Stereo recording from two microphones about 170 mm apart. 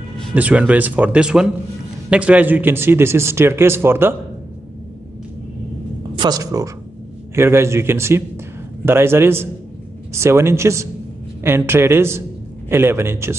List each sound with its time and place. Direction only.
0.3 s speech: 10° right (ahead or behind)
6.1 s speech: 25° right (ahead or behind)